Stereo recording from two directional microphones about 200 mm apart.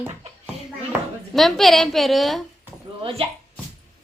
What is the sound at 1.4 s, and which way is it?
Frying, centre (ahead or behind).